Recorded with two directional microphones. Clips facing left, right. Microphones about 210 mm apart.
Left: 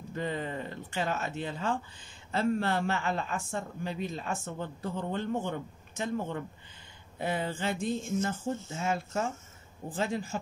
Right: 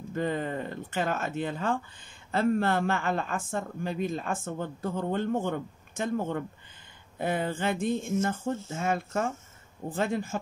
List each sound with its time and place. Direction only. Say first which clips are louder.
0.1 s speech: right 4 dB; 50° right (ahead or behind)